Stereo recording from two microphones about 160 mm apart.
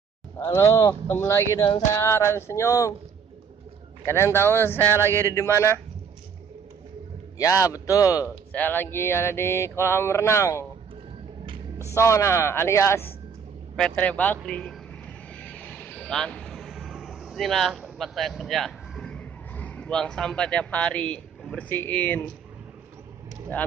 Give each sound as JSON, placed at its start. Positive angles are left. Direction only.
{"t": 0.4, "sound": "mantra", "side_deg": 15}
{"t": 4.0, "sound": "mantra", "side_deg": 15}
{"t": 7.3, "sound": "speech", "side_deg": 20}
{"t": 8.5, "sound": "mantra", "side_deg": 10}
{"t": 11.9, "sound": "mantra", "side_deg": 15}
{"t": 13.7, "sound": "vehicle", "side_deg": 5}